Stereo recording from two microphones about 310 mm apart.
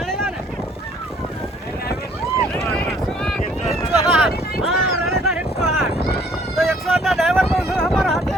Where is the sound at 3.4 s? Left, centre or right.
Left.